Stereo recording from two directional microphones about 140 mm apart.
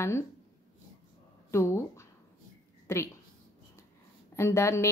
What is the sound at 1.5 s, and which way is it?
A woman's voice, 20° left (ahead or behind).